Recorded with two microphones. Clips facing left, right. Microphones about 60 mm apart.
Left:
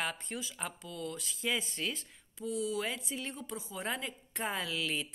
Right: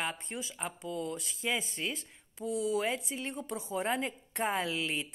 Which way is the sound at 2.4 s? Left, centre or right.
Right.